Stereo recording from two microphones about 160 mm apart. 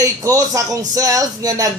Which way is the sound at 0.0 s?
20° right (ahead or behind).